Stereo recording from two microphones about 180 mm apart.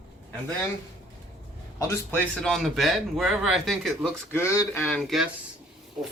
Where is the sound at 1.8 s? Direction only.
10° left (ahead or behind).